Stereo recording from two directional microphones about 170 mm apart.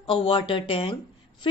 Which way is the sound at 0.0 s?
30° left (ahead or behind).